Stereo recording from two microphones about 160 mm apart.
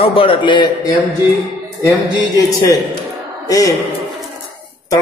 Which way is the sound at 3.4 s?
20° left (ahead or behind).